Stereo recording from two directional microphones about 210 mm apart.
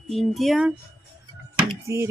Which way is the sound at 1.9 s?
15° right (ahead or behind).